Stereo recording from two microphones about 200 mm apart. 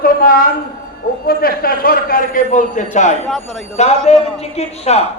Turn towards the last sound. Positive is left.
turn(degrees=30)  # may be behind; listen again after turning